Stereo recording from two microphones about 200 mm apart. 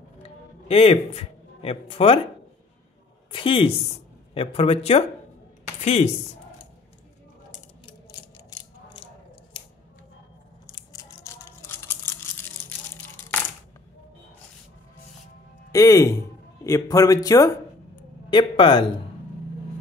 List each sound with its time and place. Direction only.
0.2 s music: 30° left (ahead or behind)
3.3 s speech: 25° left (ahead or behind)
10.9 s a sound: 15° left (ahead or behind)
15.7 s speech: 15° left (ahead or behind)